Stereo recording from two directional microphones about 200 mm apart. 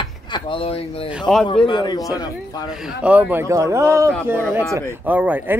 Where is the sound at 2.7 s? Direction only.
5° right (ahead or behind).